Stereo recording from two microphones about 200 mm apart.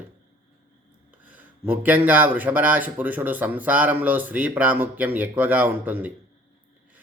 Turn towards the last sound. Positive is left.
turn(degrees=-10)  # may be behind; listen again after turning